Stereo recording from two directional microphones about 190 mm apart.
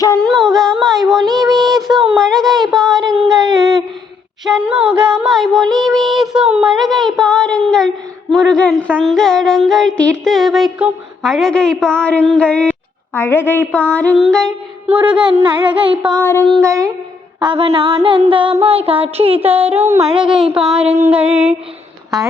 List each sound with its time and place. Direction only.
0.2 s child singing: centre (ahead or behind)
2.8 s a sound: 20° right (ahead or behind)
3.2 s a sound: centre (ahead or behind)
4.4 s child singing: 5° right (ahead or behind)
13.1 s a woman's voice: 10° left (ahead or behind)
13.7 s child singing: 5° left (ahead or behind)
14.8 s music: 10° right (ahead or behind)
15.4 s a sound: 25° right (ahead or behind)
16.2 s a woman's voice: 10° left (ahead or behind)
16.6 s music: 15° right (ahead or behind)
17.4 s a sound: 25° right (ahead or behind)
20.2 s child singing: 5° right (ahead or behind)
21.0 s music: 5° right (ahead or behind)